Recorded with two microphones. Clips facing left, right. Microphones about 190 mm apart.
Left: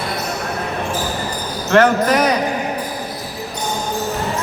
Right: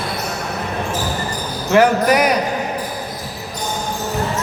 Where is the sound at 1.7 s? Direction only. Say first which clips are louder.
Even; 10° right (ahead or behind).